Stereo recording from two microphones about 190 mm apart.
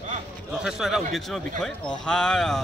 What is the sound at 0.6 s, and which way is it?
Speech, centre (ahead or behind).